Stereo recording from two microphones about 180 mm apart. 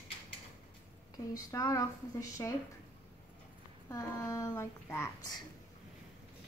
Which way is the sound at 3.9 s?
20° left (ahead or behind).